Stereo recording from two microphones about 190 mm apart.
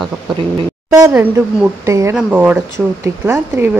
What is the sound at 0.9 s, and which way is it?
Speech, 10° right (ahead or behind).